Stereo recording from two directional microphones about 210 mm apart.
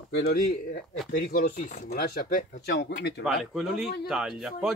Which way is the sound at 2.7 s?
55° left (ahead or behind).